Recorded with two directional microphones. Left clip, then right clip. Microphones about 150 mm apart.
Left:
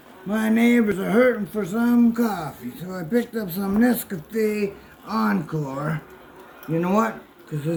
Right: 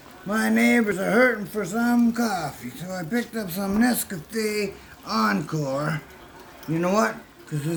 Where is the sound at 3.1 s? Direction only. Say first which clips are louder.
Left 6 dB; 30° right (ahead or behind).